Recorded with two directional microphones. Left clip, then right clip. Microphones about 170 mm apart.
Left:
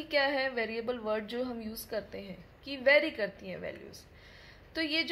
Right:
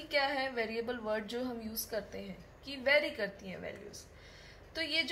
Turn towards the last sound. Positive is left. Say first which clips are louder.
# left 2 dB
turn(degrees=60)  # may be behind; listen again after turning